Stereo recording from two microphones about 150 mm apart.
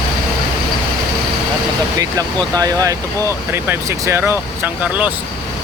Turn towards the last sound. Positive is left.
turn(degrees=-10)  # may be behind; listen again after turning